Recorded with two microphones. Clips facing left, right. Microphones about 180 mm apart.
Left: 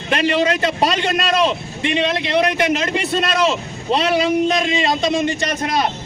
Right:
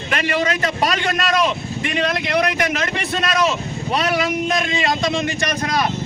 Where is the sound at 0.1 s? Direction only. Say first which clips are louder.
Left 4 dB; 25° left (ahead or behind).